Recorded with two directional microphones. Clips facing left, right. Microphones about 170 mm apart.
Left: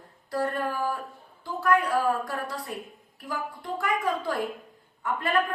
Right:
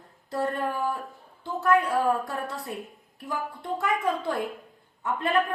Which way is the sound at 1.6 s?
25° right (ahead or behind).